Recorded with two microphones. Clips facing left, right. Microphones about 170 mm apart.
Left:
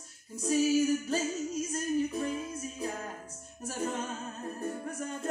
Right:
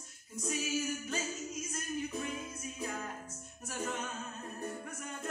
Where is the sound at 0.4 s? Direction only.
35° left (ahead or behind).